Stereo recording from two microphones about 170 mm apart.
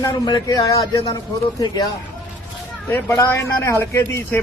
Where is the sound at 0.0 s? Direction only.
25° left (ahead or behind).